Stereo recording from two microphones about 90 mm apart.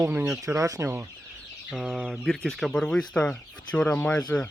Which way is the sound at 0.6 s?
35° right (ahead or behind).